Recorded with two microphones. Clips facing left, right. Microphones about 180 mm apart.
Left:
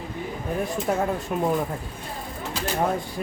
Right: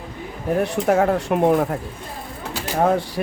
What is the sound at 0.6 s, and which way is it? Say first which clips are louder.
Speech: right 7 dB; 75° right (ahead or behind).